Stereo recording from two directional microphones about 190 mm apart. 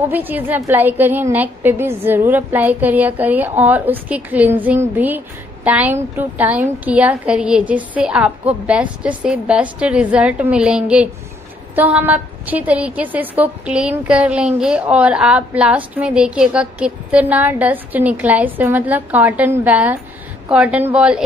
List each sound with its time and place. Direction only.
0.1 s a woman's voice: 10° right (ahead or behind)